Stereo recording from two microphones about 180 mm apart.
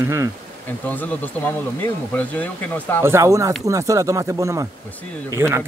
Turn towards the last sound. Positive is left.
turn(degrees=-15)  # may be behind; listen again after turning